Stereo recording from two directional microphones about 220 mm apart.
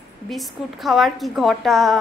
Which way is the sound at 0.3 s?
Centre (ahead or behind).